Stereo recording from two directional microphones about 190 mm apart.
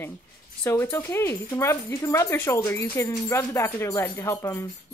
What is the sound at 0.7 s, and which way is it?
Speech, 15° left (ahead or behind).